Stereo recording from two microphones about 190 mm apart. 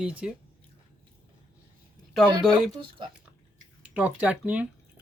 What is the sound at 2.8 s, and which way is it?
Speech, 25° right (ahead or behind).